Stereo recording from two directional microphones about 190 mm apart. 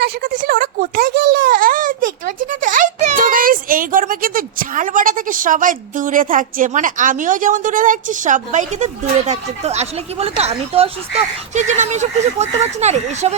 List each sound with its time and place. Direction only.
0.0 s speech: 50° right (ahead or behind)